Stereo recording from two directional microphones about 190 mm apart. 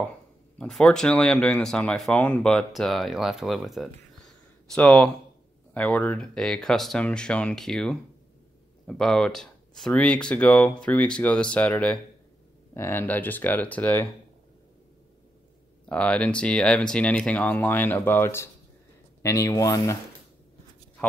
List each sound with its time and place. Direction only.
0.6 s speech: 5° left (ahead or behind)
15.9 s speech: 5° left (ahead or behind)